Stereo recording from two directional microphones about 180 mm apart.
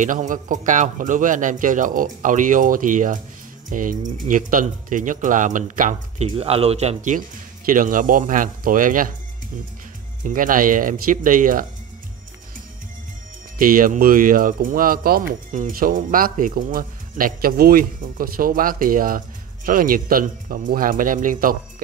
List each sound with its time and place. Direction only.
0.0 s speech: 45° right (ahead or behind)
10.2 s speech: 50° right (ahead or behind)
13.6 s speech: 50° right (ahead or behind)